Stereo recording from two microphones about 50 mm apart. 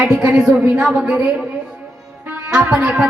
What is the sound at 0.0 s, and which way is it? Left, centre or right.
Speech, centre.